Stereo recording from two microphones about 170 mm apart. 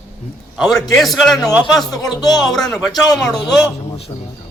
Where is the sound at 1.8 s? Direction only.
20° left (ahead or behind).